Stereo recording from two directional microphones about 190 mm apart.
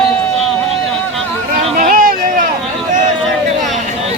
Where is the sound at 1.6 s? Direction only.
45° right (ahead or behind).